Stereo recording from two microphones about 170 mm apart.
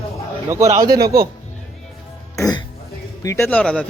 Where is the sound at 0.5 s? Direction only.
20° right (ahead or behind).